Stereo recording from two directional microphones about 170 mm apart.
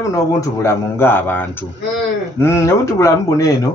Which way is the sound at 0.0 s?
20° left (ahead or behind).